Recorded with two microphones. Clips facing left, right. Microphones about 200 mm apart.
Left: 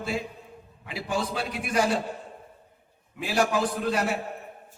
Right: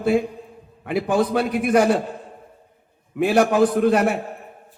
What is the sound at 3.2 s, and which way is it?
Speech, 55° right (ahead or behind).